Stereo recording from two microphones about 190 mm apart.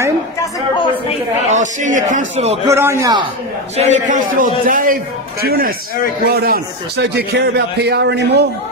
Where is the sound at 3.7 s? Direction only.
35° right (ahead or behind).